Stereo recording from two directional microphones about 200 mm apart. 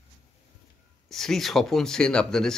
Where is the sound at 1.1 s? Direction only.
Centre (ahead or behind).